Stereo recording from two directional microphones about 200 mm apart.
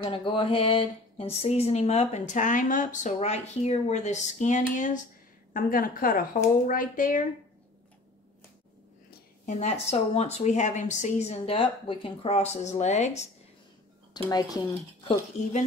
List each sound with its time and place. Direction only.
0.0 s a woman's voice: 25° left (ahead or behind); by 7.2 s 40° left (ahead or behind)
9.5 s speech: 35° left (ahead or behind)
14.1 s speech: 20° left (ahead or behind)